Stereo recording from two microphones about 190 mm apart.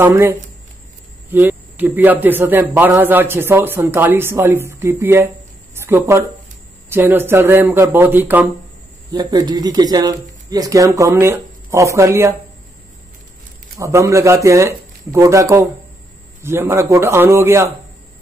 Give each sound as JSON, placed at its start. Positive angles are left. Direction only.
{"t": 0.0, "sound": "a man's voice", "side_deg": -15}
{"t": 13.7, "sound": "a man's voice", "side_deg": -15}